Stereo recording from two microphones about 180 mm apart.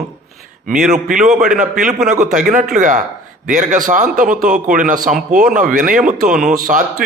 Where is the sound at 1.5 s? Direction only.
45° right (ahead or behind).